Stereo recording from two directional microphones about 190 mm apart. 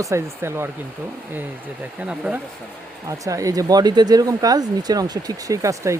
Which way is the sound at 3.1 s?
15° right (ahead or behind).